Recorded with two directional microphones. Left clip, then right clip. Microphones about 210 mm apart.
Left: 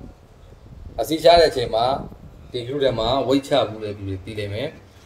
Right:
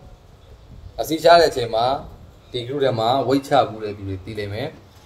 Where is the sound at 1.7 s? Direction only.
5° right (ahead or behind).